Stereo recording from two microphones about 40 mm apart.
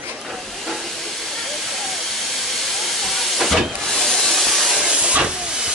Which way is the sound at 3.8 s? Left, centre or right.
Centre.